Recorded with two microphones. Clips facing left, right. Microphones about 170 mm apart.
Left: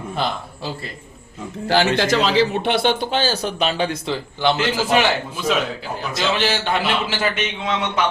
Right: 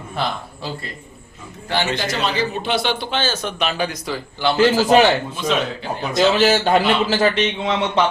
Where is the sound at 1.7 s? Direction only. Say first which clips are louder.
Left 5 dB; 70° left (ahead or behind); by 4.5 s 25° left (ahead or behind).